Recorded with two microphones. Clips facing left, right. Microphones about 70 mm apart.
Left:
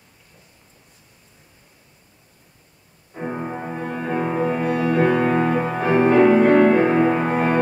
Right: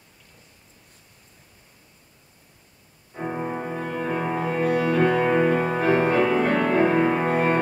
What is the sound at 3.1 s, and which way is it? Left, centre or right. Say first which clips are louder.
Music: left 1 dB; centre.